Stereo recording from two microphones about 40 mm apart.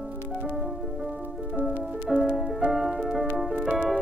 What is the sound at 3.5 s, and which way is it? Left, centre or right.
Music, right.